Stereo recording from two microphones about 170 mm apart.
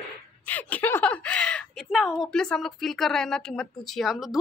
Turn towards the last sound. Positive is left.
turn(degrees=0)  # may be behind; listen again after turning